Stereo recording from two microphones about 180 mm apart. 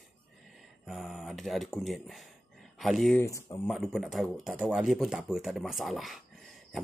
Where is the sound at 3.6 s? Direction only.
Centre (ahead or behind).